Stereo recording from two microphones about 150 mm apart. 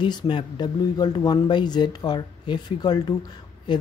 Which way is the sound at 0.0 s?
30° left (ahead or behind).